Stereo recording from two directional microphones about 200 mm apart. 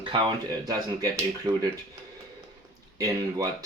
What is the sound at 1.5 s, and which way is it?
Speech, 30° right (ahead or behind).